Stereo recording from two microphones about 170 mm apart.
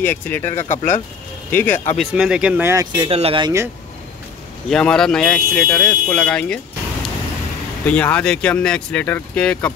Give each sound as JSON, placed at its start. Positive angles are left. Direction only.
{"t": 0.0, "sound": "speech", "side_deg": 10}
{"t": 0.5, "sound": "speech", "side_deg": 45}
{"t": 1.5, "sound": "speech", "side_deg": 10}
{"t": 2.0, "sound": "speech", "side_deg": -5}
{"t": 3.1, "sound": "speech", "side_deg": -35}
{"t": 4.6, "sound": "speech", "side_deg": 5}
{"t": 7.8, "sound": "speech", "side_deg": 10}